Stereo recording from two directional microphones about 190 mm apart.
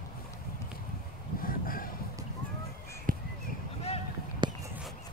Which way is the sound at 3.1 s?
45° right (ahead or behind).